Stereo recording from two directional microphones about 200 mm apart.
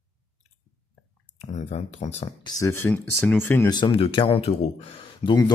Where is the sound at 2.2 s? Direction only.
20° left (ahead or behind).